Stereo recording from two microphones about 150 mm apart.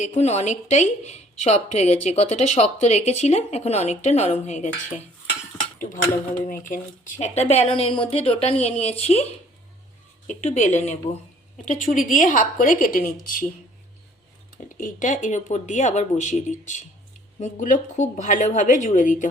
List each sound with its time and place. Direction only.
0.0 s a woman's voice: 50° left (ahead or behind)
6.7 s a woman's voice: 55° left (ahead or behind)
10.2 s a woman's voice: 50° left (ahead or behind)
14.8 s a woman's voice: 60° left (ahead or behind)